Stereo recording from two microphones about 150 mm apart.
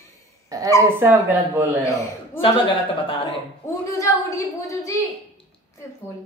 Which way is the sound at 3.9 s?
20° left (ahead or behind).